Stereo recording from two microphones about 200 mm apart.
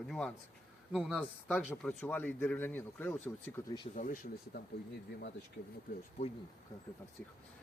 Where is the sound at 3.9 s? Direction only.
40° left (ahead or behind).